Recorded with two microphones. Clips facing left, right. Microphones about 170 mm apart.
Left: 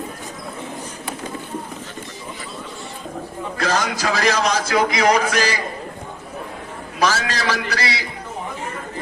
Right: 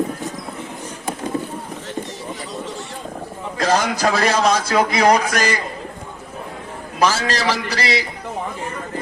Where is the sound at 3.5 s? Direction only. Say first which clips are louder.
Right 3 dB; 35° right (ahead or behind).